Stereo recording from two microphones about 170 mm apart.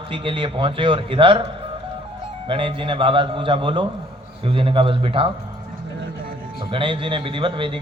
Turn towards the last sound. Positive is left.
turn(degrees=-30)  # may be behind; listen again after turning